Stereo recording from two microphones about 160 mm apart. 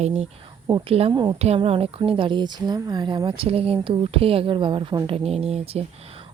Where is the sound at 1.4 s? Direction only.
40° right (ahead or behind).